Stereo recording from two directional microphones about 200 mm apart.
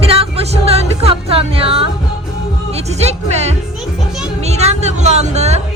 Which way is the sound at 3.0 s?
35° right (ahead or behind).